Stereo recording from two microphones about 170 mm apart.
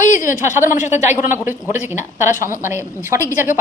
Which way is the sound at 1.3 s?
10° right (ahead or behind).